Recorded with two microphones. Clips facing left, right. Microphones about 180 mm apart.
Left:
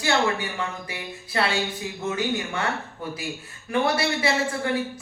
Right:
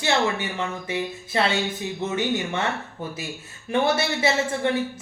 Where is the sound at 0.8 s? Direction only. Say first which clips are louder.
Right 8 dB; 25° right (ahead or behind).